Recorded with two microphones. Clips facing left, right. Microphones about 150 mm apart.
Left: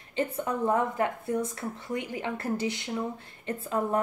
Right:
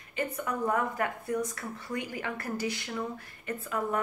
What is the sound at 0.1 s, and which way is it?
A woman's voice, 25° left (ahead or behind).